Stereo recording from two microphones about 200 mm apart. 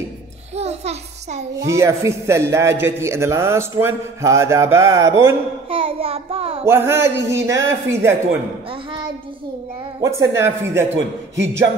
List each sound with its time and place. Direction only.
0.6 s a sound: 30° right (ahead or behind)
1.7 s a man's voice: 15° right (ahead or behind)
5.7 s a child's voice: 30° right (ahead or behind)
6.6 s a man's voice: 10° right (ahead or behind)
10.0 s a man's voice: 15° right (ahead or behind)
11.0 s a man's voice: 65° right (ahead or behind)